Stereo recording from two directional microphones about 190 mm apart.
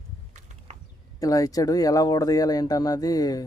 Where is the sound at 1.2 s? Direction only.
20° left (ahead or behind).